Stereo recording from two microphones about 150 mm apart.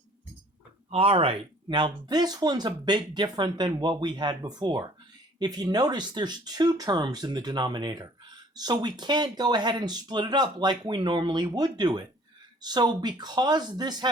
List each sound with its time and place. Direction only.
0.9 s speech: 40° right (ahead or behind)